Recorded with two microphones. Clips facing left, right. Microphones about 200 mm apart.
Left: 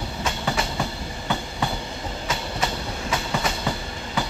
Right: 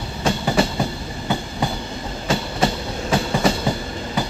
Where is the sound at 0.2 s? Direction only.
30° right (ahead or behind).